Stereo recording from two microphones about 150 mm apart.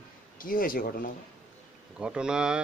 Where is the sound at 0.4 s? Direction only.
70° left (ahead or behind).